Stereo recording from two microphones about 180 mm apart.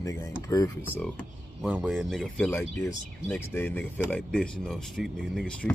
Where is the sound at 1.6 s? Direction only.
5° right (ahead or behind).